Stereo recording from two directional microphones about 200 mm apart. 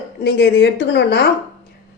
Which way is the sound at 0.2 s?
55° left (ahead or behind).